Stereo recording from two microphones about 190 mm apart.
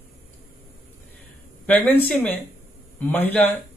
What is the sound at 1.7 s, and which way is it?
Speech, 10° left (ahead or behind).